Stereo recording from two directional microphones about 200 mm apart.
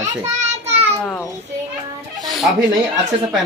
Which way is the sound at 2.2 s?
Centre (ahead or behind).